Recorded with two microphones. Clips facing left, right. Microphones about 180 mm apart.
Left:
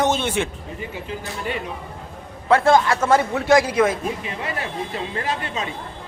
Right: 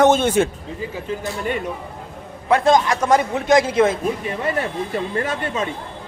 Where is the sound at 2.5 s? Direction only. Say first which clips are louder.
Even; 20° right (ahead or behind).